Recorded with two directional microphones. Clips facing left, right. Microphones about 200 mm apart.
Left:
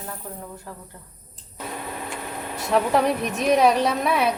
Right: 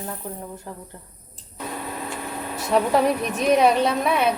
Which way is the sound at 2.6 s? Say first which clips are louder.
Right 1 dB; centre (ahead or behind).